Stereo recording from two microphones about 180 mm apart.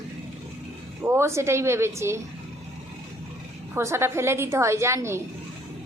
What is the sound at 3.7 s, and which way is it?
A woman's voice, 15° right (ahead or behind).